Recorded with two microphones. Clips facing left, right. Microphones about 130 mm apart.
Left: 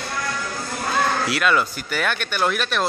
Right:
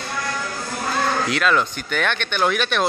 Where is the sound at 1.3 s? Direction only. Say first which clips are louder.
Right 1 dB; 5° left (ahead or behind).